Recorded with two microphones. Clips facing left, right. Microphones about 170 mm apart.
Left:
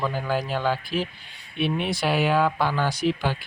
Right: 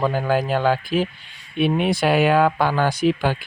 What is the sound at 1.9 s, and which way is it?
Speech, 55° right (ahead or behind).